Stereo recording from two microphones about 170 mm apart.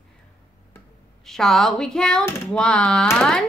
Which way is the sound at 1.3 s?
Centre (ahead or behind).